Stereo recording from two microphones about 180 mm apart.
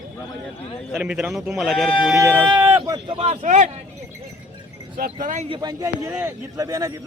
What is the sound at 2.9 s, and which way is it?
Speech, 30° right (ahead or behind).